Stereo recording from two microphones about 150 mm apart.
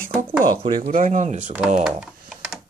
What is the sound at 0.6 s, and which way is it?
Speech, 40° right (ahead or behind).